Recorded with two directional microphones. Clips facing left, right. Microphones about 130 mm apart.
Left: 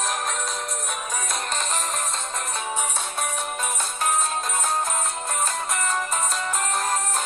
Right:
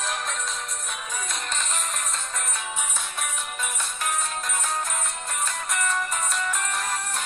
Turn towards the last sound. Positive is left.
turn(degrees=30)  # may be behind; listen again after turning